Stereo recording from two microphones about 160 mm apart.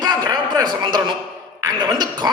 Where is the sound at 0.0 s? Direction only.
25° right (ahead or behind).